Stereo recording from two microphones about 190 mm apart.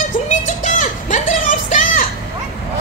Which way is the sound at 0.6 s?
40° left (ahead or behind).